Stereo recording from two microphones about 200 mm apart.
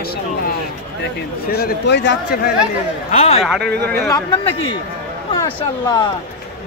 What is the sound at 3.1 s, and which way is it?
Speech, 30° left (ahead or behind).